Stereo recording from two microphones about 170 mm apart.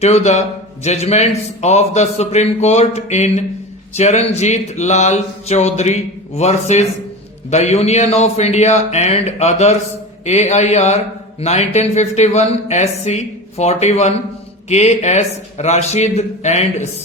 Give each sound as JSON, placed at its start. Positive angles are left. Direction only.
{"t": 0.0, "sound": "speech", "side_deg": 40}